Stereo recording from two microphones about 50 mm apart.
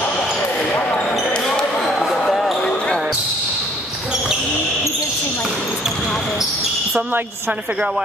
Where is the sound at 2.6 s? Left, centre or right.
Centre.